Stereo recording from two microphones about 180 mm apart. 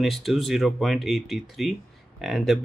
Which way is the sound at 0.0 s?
Centre (ahead or behind).